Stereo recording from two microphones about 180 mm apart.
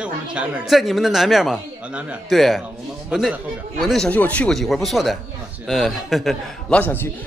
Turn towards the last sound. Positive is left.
turn(degrees=10)  # may be behind; listen again after turning